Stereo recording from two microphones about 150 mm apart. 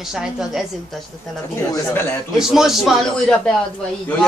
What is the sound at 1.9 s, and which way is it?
Speech, 15° left (ahead or behind).